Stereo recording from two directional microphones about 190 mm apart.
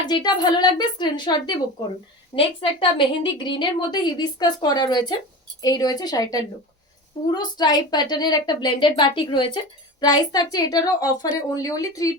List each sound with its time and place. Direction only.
0.0 s a woman's voice: 20° left (ahead or behind)